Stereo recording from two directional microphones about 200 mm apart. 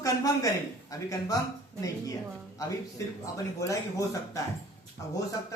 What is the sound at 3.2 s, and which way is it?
Speech, 15° left (ahead or behind).